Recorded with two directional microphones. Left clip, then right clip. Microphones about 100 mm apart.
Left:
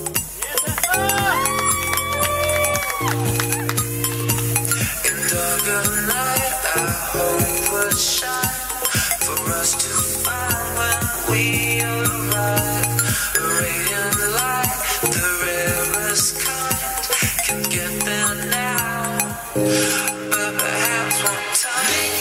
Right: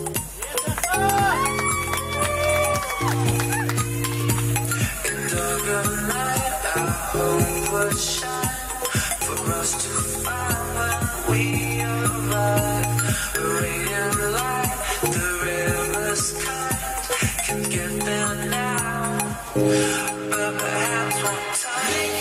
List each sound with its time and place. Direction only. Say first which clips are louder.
0.9 s cowbell: even; 25° left (ahead or behind)
2.1 s music: even; 25° left (ahead or behind)
5.7 s music: left 3 dB; 25° left (ahead or behind)
10.8 s music: left 3 dB; 25° left (ahead or behind)
14.2 s music: left 3 dB; 25° left (ahead or behind)
18.1 s music: left 3 dB; 25° left (ahead or behind)